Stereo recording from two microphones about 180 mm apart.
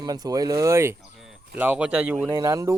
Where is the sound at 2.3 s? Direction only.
20° right (ahead or behind).